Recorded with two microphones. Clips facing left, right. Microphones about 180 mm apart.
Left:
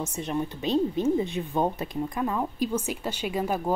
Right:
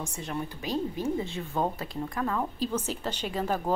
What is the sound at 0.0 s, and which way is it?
A woman's voice, 20° left (ahead or behind).